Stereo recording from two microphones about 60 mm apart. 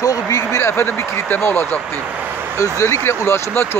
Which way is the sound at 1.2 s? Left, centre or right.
Left.